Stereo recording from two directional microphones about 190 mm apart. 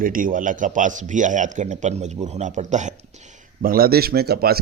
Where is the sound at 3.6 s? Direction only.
50° right (ahead or behind).